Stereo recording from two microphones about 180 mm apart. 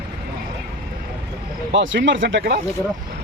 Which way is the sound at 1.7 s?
90° right.